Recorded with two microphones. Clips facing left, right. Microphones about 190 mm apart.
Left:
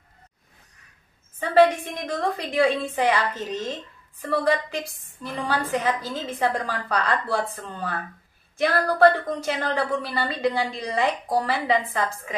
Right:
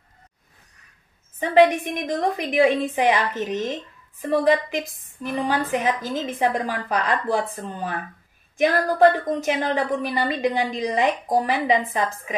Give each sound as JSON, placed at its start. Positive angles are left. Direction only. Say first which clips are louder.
{"t": 1.5, "sound": "a woman's voice", "louder": "right 1 dB", "side_deg": -15}